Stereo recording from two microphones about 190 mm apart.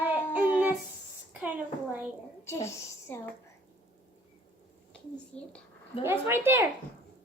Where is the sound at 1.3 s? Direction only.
10° right (ahead or behind).